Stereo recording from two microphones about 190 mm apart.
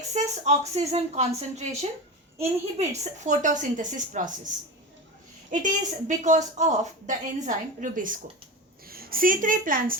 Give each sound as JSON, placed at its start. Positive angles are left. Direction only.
{"t": 0.1, "sound": "speech", "side_deg": -35}
{"t": 5.5, "sound": "a woman's voice", "side_deg": -40}